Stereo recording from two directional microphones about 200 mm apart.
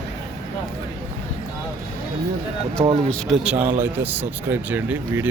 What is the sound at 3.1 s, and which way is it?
Speech, 5° right (ahead or behind).